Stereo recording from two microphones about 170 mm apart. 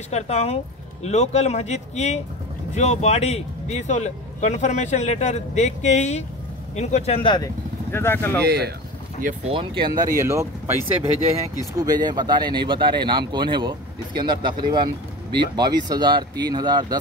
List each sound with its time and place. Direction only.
0.1 s speech: 40° left (ahead or behind)
7.3 s speech: 15° left (ahead or behind)
8.5 s speech: 70° right (ahead or behind)
9.5 s speech: 30° right (ahead or behind)